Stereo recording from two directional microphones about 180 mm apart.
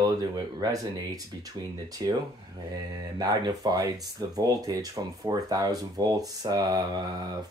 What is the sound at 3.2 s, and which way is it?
Speech, 20° right (ahead or behind).